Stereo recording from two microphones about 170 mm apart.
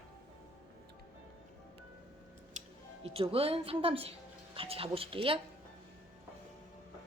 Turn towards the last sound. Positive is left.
turn(degrees=-35)  # may be behind; listen again after turning